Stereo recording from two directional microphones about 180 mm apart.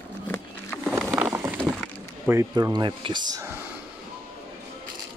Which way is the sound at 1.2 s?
10° right (ahead or behind).